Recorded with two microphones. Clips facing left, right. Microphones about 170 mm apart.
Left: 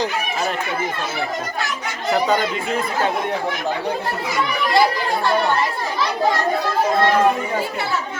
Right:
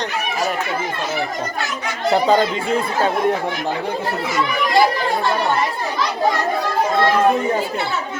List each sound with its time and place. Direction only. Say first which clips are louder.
2.1 s speech: right 4 dB; 30° right (ahead or behind)